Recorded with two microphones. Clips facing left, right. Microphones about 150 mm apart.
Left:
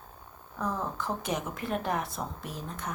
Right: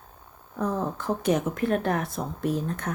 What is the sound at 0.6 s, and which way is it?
A woman's voice, 50° right (ahead or behind).